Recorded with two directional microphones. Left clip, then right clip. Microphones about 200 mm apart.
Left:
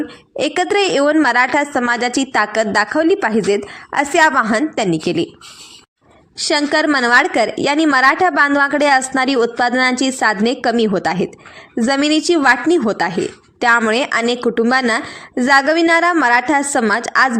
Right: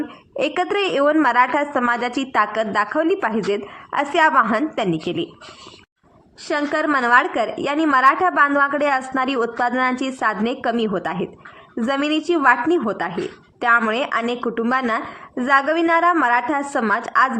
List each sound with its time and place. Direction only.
0.3 s a woman's voice: 20° left (ahead or behind)
6.4 s a woman's voice: 30° left (ahead or behind)